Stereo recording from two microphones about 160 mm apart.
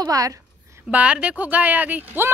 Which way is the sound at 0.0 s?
20° right (ahead or behind).